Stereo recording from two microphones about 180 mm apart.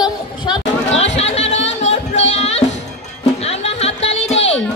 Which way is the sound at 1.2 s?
35° left (ahead or behind).